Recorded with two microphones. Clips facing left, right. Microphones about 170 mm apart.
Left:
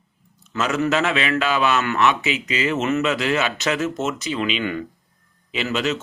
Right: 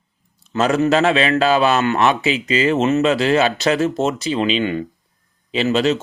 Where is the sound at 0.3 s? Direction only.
35° right (ahead or behind).